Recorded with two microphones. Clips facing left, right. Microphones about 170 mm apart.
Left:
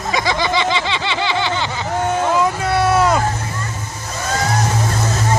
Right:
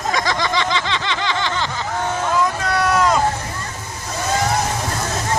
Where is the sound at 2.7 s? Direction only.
30° left (ahead or behind).